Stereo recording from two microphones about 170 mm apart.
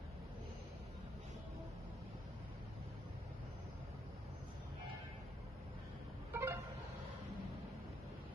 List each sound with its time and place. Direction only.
6.3 s vehicle: 15° right (ahead or behind)